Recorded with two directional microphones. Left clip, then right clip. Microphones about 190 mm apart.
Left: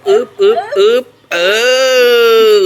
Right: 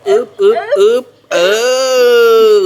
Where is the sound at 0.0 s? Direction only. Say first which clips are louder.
Even; 15° right (ahead or behind).